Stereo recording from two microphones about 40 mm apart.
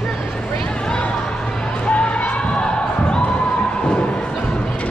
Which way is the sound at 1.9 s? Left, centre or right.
Left.